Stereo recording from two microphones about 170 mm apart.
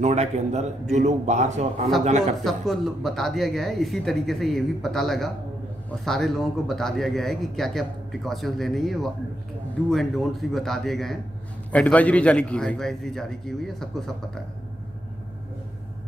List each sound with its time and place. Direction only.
0.0 s a man's voice: 40° right (ahead or behind)
2.4 s speech: centre (ahead or behind)